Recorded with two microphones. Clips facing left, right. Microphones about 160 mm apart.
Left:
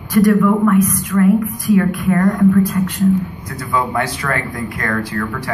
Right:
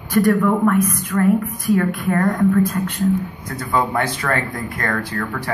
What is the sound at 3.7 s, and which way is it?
A woman's voice, 45° right (ahead or behind).